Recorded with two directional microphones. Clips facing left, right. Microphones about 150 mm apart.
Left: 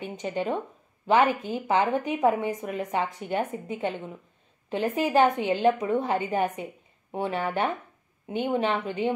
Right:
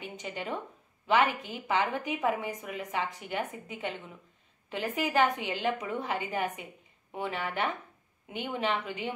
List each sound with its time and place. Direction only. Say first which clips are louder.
0.0 s a woman's voice: left 8 dB; 35° left (ahead or behind)